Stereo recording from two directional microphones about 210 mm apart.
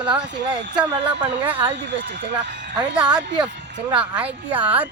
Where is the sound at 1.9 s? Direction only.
55° right (ahead or behind).